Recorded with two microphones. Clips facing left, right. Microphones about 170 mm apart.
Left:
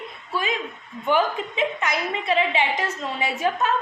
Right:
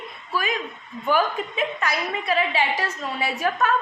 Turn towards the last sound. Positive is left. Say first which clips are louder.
# even
turn(degrees=20)  # may be behind; listen again after turning